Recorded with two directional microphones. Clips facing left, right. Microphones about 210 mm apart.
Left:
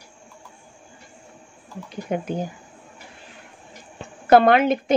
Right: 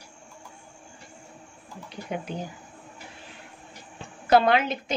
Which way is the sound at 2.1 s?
45° left (ahead or behind).